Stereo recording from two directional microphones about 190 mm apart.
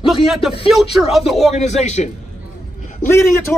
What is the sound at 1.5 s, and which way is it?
Speech, 35° left (ahead or behind).